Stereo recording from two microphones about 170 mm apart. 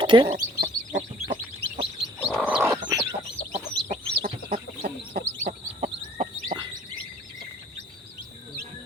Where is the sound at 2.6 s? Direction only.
20° right (ahead or behind).